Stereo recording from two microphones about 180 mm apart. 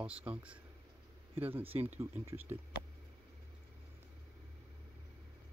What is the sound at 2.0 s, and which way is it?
Speech, 15° right (ahead or behind).